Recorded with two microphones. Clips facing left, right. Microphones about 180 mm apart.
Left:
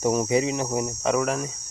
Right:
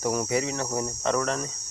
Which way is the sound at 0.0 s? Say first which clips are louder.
Left 4 dB; 20° left (ahead or behind).